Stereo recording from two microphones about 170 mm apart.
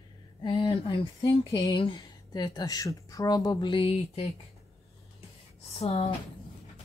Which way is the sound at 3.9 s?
40° left (ahead or behind).